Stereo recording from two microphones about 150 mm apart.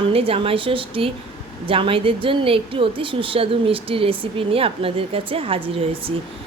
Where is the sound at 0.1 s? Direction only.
40° right (ahead or behind).